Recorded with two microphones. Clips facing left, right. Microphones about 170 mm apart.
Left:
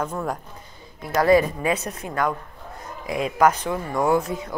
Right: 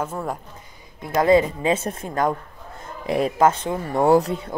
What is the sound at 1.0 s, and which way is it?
A woman's voice, 20° right (ahead or behind).